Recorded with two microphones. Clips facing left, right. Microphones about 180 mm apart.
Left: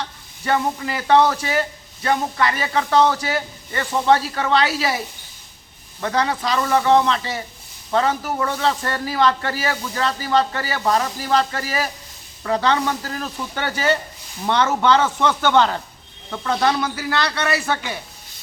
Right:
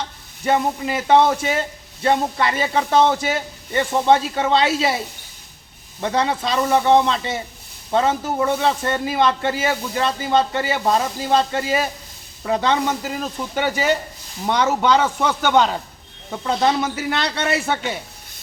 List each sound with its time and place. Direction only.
0.0 s speech: 20° right (ahead or behind)
6.0 s speech: 20° right (ahead or behind)